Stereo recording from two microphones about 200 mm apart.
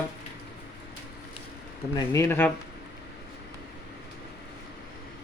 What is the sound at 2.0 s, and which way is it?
Speech, 15° left (ahead or behind).